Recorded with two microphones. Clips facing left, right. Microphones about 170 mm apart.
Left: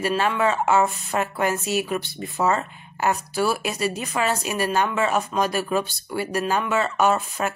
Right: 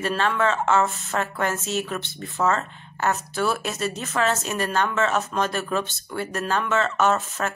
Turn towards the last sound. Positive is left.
turn(degrees=15)  # may be behind; listen again after turning